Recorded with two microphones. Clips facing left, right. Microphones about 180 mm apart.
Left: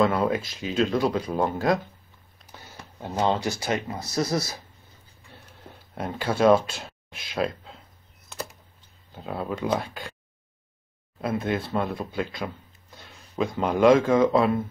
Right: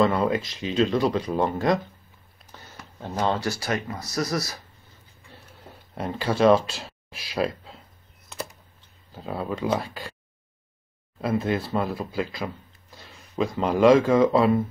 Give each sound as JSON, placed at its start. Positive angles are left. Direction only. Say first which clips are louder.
{"t": 0.0, "sound": "speech", "louder": "right 1 dB", "side_deg": 0}
{"t": 3.2, "sound": "speech", "louder": "left 1 dB", "side_deg": 20}
{"t": 5.9, "sound": "speech", "louder": "right 1 dB", "side_deg": 0}
{"t": 9.1, "sound": "speech", "louder": "right 1 dB", "side_deg": 0}
{"t": 11.1, "sound": "speech", "louder": "right 2 dB", "side_deg": 0}